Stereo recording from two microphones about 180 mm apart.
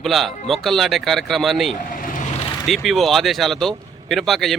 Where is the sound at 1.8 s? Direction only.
50° left (ahead or behind).